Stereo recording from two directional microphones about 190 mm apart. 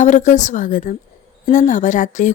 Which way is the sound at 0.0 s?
40° left (ahead or behind).